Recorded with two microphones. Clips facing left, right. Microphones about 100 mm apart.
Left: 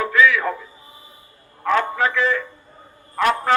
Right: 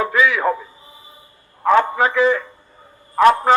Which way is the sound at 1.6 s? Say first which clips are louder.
Right 5 dB; 25° right (ahead or behind).